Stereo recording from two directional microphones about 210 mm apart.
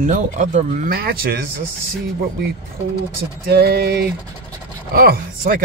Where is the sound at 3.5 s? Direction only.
50° right (ahead or behind).